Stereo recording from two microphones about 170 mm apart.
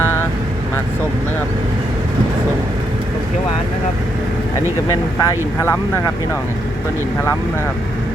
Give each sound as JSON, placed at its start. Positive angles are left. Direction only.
{"t": 0.0, "sound": "vehicle", "side_deg": 15}
{"t": 4.9, "sound": "speech", "side_deg": 20}